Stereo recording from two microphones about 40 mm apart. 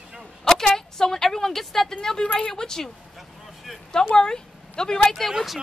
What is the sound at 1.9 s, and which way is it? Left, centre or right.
Speech, centre.